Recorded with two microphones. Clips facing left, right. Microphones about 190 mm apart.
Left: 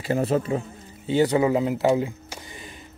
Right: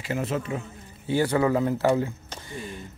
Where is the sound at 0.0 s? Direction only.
35° left (ahead or behind).